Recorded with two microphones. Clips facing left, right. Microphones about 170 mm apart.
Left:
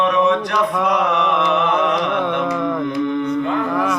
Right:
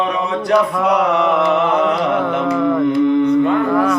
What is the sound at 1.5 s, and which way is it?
Music, 10° right (ahead or behind).